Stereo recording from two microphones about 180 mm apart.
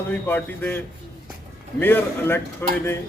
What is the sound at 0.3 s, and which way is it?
Speech, 10° left (ahead or behind).